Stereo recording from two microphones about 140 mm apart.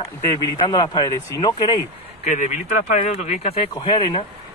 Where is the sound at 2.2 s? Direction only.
60° left (ahead or behind).